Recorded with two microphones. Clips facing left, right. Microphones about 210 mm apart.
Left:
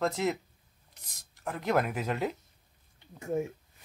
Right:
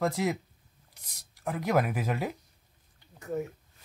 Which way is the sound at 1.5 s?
10° right (ahead or behind).